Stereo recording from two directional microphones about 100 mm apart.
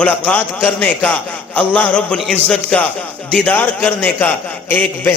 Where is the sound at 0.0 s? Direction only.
15° left (ahead or behind).